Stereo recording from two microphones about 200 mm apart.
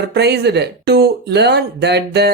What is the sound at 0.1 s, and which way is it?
Speech, 55° right (ahead or behind).